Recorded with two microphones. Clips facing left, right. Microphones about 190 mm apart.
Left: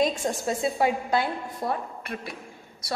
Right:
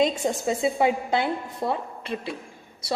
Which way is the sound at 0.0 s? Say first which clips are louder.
Right 2 dB; 20° right (ahead or behind).